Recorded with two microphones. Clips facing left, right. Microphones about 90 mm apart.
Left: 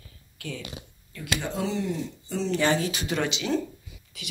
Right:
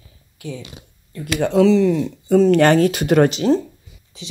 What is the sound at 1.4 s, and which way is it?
Speech, 80° right.